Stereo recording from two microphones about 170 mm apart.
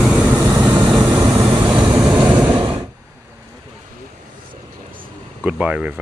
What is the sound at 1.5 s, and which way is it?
Train, 10° right (ahead or behind).